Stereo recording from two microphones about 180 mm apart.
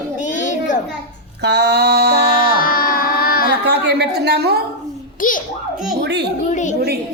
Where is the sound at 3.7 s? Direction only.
65° right (ahead or behind).